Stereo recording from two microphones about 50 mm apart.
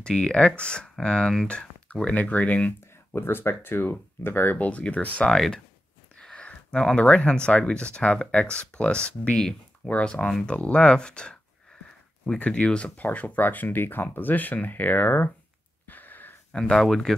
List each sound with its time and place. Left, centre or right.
0.0 s speech: centre; by 3.2 s left
3.2 s speech: left
4.6 s speech: left
5.3 s speech: centre
6.3 s a sound: left
7.0 s speech: left
9.3 s speech: centre
9.8 s speech: left
12.4 s speech: left
15.9 s wheeze: left
16.5 s speech: centre